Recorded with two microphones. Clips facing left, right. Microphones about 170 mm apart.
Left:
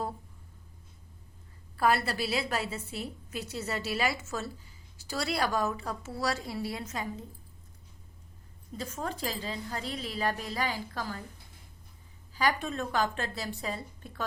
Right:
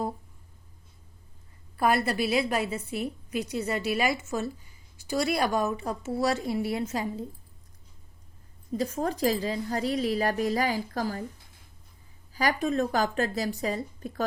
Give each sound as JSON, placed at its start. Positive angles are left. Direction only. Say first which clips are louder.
{"t": 1.7, "sound": "a woman's voice", "louder": "right 3 dB", "side_deg": -15}
{"t": 8.8, "sound": "a woman's voice", "louder": "right 8 dB", "side_deg": -40}
{"t": 12.3, "sound": "a woman's voice", "louder": "right 4 dB", "side_deg": -40}